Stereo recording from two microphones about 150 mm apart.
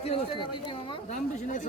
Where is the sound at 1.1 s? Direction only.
55° left (ahead or behind).